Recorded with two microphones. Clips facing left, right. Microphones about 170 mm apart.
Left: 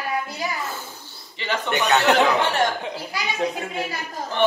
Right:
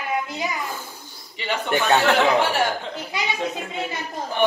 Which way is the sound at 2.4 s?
10° right (ahead or behind).